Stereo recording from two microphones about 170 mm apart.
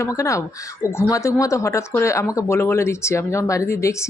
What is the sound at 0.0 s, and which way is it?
Speech, 20° left (ahead or behind).